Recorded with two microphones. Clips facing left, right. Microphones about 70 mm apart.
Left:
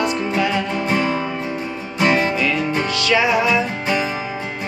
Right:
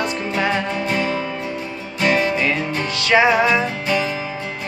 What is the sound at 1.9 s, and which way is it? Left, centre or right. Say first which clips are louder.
Music: left 1 dB; centre.